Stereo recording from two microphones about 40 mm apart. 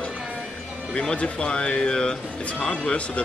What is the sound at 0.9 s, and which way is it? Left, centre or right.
Speech, left.